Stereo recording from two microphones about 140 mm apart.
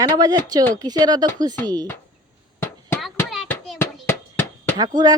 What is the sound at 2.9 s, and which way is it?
Hands, centre (ahead or behind).